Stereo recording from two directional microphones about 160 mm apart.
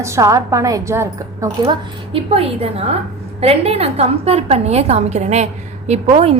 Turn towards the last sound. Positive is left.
turn(degrees=-40)  # may be behind; listen again after turning